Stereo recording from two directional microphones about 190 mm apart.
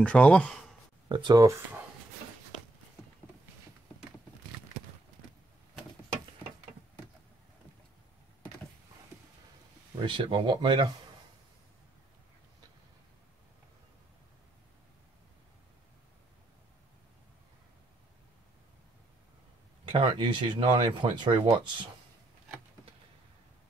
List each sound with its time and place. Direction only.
0.0 s speech: 5° left (ahead or behind)
1.0 s speech: 25° right (ahead or behind)
10.0 s speech: 25° right (ahead or behind)
19.8 s speech: 25° right (ahead or behind)